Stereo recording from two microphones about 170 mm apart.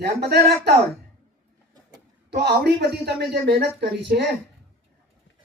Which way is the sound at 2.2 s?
75° right (ahead or behind).